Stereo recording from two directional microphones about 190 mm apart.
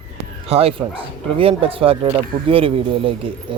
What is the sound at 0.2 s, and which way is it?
Speech, 30° right (ahead or behind).